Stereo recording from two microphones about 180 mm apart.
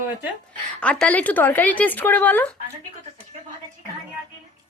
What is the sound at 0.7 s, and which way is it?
Speech, 5° left (ahead or behind).